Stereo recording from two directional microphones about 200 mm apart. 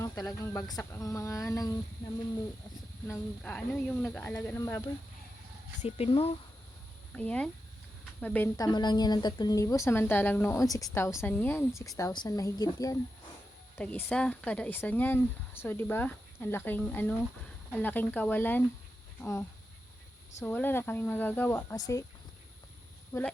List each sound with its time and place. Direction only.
0.8 s speech: 15° left (ahead or behind)
3.1 s speech: 5° left (ahead or behind)
5.8 s speech: 30° left (ahead or behind)
7.1 s speech: 5° left (ahead or behind)
13.7 s speech: 10° left (ahead or behind)
23.1 s speech: 15° left (ahead or behind)